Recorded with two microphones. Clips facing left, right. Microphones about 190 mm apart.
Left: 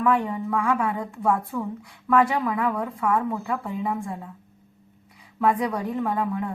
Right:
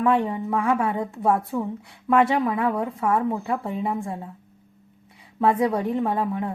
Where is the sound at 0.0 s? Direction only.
25° right (ahead or behind).